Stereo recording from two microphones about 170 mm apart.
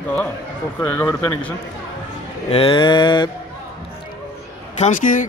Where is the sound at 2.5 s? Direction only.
30° left (ahead or behind).